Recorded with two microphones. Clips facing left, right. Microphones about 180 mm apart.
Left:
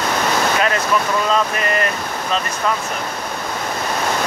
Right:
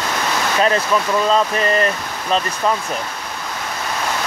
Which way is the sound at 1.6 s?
30° right (ahead or behind).